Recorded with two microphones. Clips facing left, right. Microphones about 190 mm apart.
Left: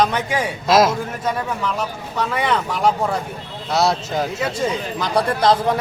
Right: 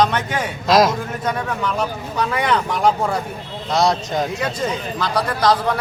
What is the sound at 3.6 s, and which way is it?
A man's voice, 5° left (ahead or behind).